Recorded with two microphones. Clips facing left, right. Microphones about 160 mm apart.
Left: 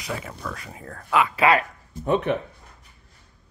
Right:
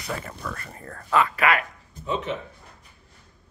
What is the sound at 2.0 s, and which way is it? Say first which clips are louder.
Speech: left 6 dB; 60° left (ahead or behind).